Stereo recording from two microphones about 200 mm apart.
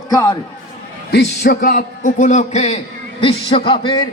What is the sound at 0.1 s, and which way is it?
Speech, 20° left (ahead or behind).